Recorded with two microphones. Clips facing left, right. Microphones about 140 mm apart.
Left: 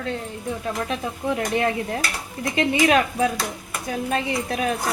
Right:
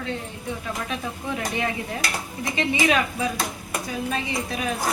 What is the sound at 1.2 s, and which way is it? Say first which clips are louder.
Speech: left 7 dB; 40° left (ahead or behind).